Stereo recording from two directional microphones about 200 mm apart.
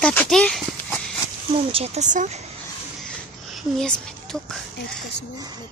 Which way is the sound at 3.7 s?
5° left (ahead or behind).